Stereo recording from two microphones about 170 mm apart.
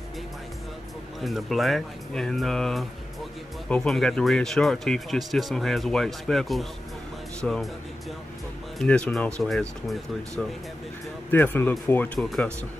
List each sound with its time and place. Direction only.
1.2 s speech: centre (ahead or behind)
8.7 s speech: 5° left (ahead or behind)
11.2 s speech: 10° left (ahead or behind)